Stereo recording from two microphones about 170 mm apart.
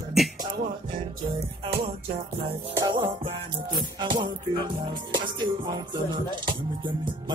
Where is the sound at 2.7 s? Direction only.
25° right (ahead or behind).